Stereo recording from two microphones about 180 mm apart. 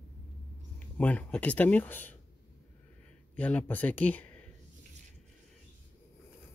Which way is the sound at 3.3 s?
10° left (ahead or behind).